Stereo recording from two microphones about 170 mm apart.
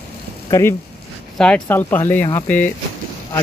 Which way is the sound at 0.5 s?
15° left (ahead or behind).